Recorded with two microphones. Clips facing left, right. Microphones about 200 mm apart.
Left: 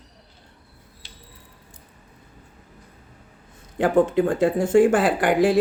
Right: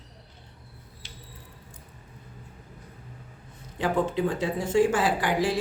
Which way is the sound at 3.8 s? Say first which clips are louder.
Left 7 dB; 50° left (ahead or behind).